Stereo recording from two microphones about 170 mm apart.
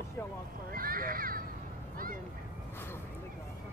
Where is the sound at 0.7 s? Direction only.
55° right (ahead or behind).